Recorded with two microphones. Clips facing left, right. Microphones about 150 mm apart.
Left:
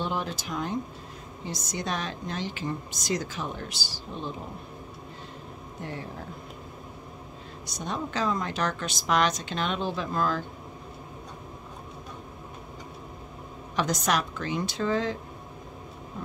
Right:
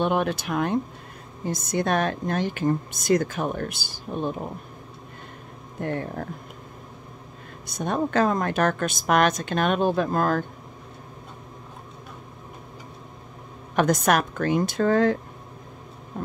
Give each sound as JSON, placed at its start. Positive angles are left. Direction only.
{"t": 0.0, "sound": "a woman's voice", "side_deg": -60}
{"t": 5.8, "sound": "speech", "side_deg": -55}
{"t": 7.6, "sound": "a woman's voice", "side_deg": -55}
{"t": 13.7, "sound": "a woman's voice", "side_deg": -55}